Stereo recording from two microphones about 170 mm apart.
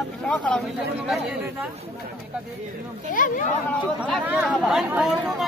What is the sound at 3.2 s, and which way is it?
Speech, 50° left (ahead or behind).